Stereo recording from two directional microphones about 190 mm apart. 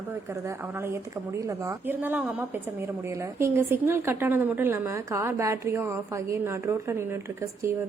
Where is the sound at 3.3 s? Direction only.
15° right (ahead or behind).